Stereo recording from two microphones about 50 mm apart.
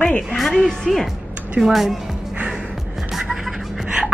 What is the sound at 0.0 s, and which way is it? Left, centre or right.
Music, left.